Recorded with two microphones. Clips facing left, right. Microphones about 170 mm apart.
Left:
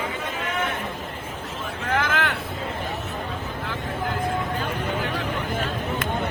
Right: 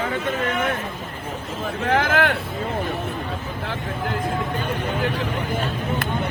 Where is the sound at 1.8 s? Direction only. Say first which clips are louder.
Right 5 dB; 55° right (ahead or behind).